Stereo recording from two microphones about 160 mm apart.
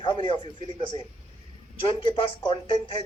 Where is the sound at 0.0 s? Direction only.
30° left (ahead or behind).